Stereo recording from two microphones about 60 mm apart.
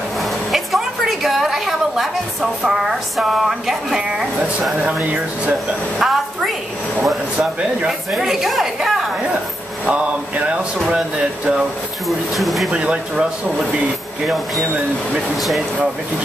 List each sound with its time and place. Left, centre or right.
0.2 s a sound: centre
4.8 s speech: centre
5.9 s a woman's voice: centre
8.1 s a woman's voice: centre
9.8 s mantra: right
12.4 s a woman's voice: centre
12.7 s speech: centre